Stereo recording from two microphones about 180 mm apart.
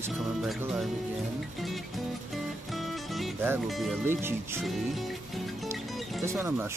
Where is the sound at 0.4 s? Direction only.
Centre (ahead or behind).